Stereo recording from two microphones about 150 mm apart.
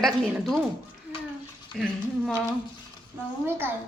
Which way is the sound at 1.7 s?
5° left (ahead or behind).